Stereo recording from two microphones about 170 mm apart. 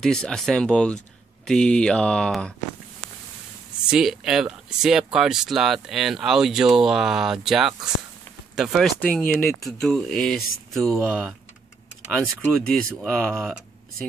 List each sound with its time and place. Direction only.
0.0 s speech: 5° left (ahead or behind)
3.8 s speech: 5° right (ahead or behind)
12.6 s speech: 5° left (ahead or behind)